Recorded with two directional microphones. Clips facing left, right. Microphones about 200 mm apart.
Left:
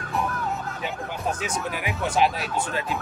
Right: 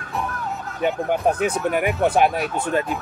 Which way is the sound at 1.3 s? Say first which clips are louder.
Right 6 dB; 55° right (ahead or behind).